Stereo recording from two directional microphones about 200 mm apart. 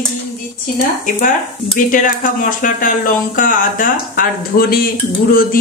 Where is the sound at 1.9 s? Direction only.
40° left (ahead or behind).